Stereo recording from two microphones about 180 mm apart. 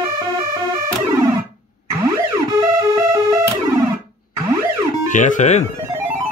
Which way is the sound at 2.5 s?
20° right (ahead or behind).